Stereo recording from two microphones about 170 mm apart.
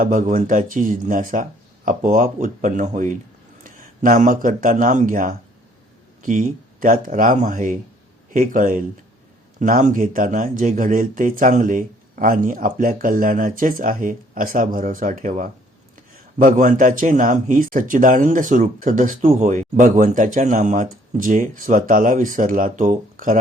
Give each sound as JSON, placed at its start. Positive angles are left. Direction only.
{"t": 0.0, "sound": "a man's voice", "side_deg": -55}